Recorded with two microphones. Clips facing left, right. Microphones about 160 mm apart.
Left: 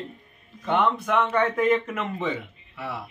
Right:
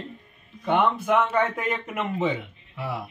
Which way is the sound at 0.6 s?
5° right (ahead or behind).